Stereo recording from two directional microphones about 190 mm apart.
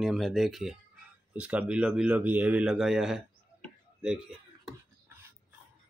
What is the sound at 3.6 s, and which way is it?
Tick-tock, 5° right (ahead or behind).